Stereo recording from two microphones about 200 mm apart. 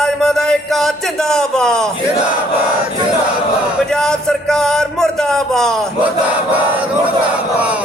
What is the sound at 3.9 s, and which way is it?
A man's voice, 5° left (ahead or behind).